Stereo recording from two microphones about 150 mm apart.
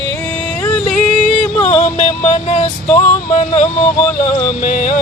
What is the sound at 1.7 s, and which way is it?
Music, 50° left (ahead or behind).